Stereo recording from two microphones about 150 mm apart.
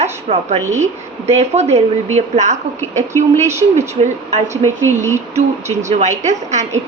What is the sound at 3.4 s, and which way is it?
Speech, 15° right (ahead or behind).